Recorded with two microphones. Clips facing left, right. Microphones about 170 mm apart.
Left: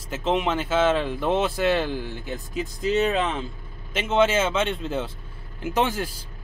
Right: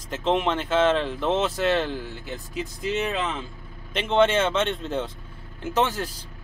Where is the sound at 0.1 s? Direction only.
5° left (ahead or behind).